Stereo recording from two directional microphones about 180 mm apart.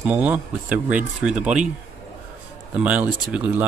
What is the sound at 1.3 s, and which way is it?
Speech, 40° right (ahead or behind).